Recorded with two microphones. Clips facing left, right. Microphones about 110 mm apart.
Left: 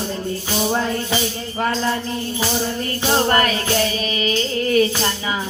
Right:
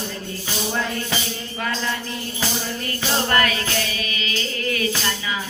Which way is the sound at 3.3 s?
30° left (ahead or behind).